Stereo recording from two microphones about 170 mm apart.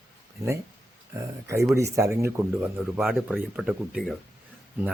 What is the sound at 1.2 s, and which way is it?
Speech, 15° right (ahead or behind).